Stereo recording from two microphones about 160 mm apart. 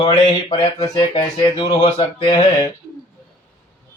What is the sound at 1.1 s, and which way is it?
Speech, 30° left (ahead or behind).